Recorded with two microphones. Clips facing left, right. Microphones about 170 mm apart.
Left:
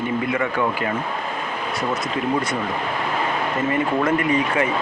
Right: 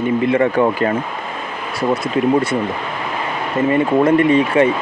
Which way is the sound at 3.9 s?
30° right (ahead or behind).